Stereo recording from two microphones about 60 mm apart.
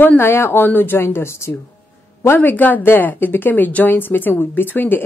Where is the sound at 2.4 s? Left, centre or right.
Left.